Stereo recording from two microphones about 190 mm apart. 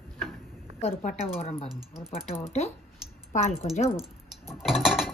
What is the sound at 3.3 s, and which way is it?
Speech, 35° left (ahead or behind).